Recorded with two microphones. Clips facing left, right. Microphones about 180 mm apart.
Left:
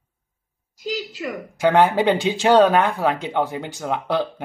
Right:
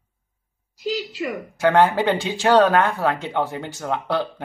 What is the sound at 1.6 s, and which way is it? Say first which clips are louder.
Speech: left 1 dB; 15° left (ahead or behind).